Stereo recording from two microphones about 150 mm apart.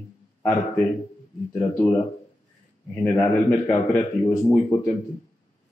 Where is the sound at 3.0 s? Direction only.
15° left (ahead or behind).